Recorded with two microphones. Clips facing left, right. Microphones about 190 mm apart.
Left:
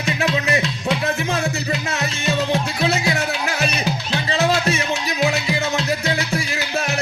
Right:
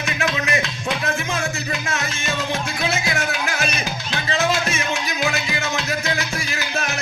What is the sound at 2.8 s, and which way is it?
Music, 35° left (ahead or behind).